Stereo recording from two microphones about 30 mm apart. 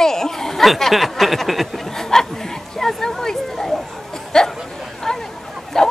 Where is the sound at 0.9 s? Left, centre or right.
Centre.